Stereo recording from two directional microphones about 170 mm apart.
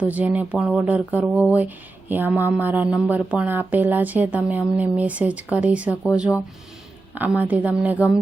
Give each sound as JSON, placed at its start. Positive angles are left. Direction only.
{"t": 0.1, "sound": "speech", "side_deg": -10}